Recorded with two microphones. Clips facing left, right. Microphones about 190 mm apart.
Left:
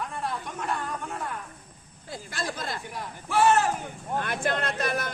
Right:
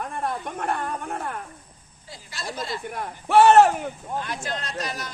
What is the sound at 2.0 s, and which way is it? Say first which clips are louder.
Speech: left 2 dB; 50° left (ahead or behind).